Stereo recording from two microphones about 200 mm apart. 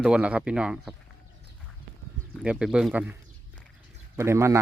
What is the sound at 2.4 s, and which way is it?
Speech, 5° right (ahead or behind).